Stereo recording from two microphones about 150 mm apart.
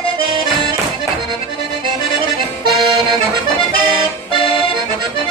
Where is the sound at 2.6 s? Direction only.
30° right (ahead or behind).